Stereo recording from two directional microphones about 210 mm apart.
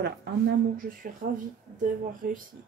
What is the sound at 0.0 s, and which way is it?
Speech, 45° right (ahead or behind).